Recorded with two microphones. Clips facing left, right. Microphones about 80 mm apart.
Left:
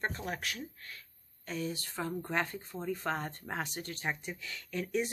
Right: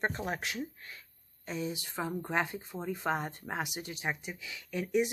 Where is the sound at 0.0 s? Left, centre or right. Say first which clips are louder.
Right 3 dB; right.